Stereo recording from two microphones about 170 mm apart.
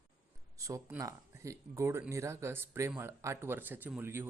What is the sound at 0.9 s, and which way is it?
Speech, 20° right (ahead or behind).